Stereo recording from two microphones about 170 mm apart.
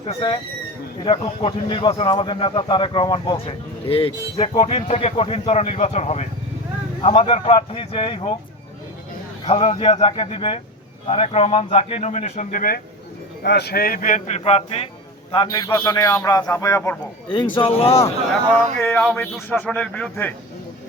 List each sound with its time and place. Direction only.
0.0 s a man's voice: 35° left (ahead or behind)
9.5 s a man's voice: 35° left (ahead or behind); by 12.8 s 55° left (ahead or behind)
13.4 s speech: 75° left (ahead or behind); by 14.8 s 35° left (ahead or behind)
15.3 s a man's voice: 25° left (ahead or behind)
17.3 s a man's voice: 30° left (ahead or behind)
18.8 s speech: 10° left (ahead or behind)